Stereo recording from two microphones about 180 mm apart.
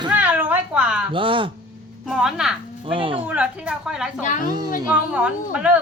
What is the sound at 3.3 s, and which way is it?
Speech, 5° right (ahead or behind).